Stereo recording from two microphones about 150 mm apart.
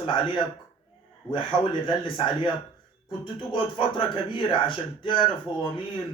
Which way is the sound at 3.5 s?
35° left (ahead or behind).